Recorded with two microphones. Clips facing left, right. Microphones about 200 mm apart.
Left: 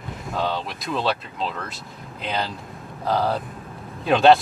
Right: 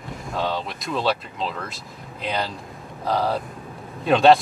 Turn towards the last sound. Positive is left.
turn(degrees=0)  # may be behind; listen again after turning